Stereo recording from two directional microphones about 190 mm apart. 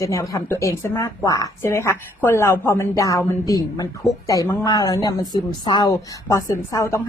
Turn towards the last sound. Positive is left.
turn(degrees=15)  # may be behind; listen again after turning